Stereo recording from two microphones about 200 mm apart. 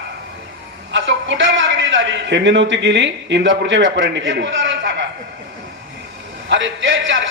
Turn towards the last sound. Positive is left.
turn(degrees=-65)  # may be behind; listen again after turning